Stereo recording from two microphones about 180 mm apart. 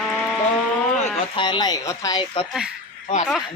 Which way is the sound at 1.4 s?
25° left (ahead or behind).